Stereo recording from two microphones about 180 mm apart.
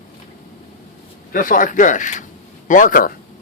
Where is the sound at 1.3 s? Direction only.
50° left (ahead or behind).